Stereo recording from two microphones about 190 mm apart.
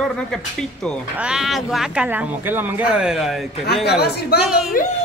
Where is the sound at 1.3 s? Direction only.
Centre (ahead or behind).